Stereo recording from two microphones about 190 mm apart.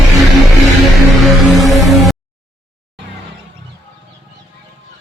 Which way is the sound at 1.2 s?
Centre (ahead or behind).